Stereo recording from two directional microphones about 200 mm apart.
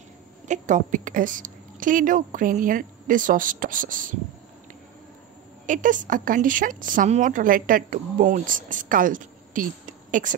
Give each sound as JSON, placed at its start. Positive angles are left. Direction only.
{"t": 0.5, "sound": "a woman's voice", "side_deg": -40}
{"t": 5.7, "sound": "a woman's voice", "side_deg": -40}